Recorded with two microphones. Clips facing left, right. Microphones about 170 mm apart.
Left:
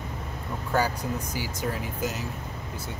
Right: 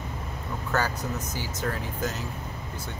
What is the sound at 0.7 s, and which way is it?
Speech, 10° left (ahead or behind).